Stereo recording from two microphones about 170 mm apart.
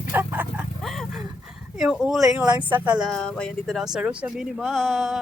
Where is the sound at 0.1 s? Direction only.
10° right (ahead or behind).